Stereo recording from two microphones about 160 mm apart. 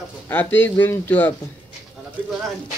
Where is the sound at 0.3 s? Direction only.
10° left (ahead or behind).